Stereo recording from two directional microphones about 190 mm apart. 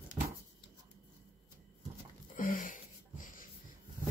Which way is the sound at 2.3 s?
45° left (ahead or behind).